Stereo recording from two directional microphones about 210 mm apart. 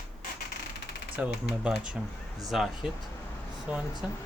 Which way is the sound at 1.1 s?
5° right (ahead or behind).